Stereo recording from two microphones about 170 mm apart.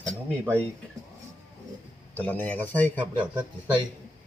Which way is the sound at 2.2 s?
10° left (ahead or behind).